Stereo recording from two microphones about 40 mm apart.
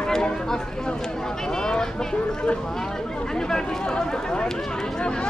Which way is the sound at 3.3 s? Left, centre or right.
Centre.